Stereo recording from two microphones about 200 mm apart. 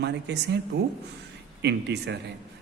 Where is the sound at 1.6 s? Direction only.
60° right (ahead or behind).